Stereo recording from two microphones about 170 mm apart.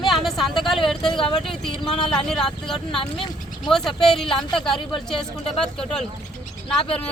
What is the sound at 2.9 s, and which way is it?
Speech, 30° left (ahead or behind).